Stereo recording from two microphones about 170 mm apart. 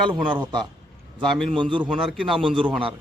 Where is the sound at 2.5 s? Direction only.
30° right (ahead or behind).